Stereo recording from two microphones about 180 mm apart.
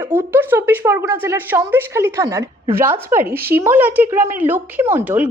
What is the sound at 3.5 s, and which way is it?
A woman's voice, 10° right (ahead or behind).